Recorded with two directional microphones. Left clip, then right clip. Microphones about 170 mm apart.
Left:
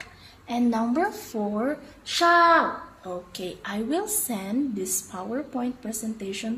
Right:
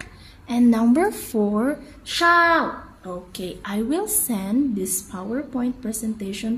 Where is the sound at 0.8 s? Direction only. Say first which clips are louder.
Right 5 dB; 35° right (ahead or behind).